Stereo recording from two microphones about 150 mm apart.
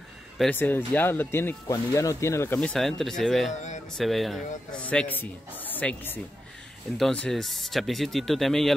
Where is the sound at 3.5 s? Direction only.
50° left (ahead or behind).